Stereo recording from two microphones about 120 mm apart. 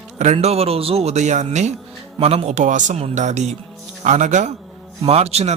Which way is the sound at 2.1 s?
55° right (ahead or behind).